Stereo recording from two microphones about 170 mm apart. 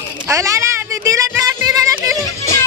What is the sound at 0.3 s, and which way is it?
Speech, 20° right (ahead or behind).